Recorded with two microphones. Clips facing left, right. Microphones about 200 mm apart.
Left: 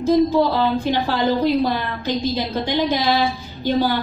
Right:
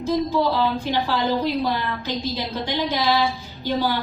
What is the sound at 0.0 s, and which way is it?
A woman's voice, 50° left (ahead or behind).